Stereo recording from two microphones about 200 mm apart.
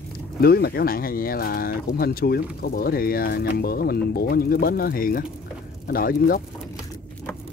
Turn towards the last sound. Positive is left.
turn(degrees=45)  # may be behind; listen again after turning